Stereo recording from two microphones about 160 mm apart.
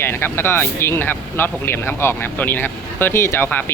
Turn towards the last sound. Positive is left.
turn(degrees=10)  # may be behind; listen again after turning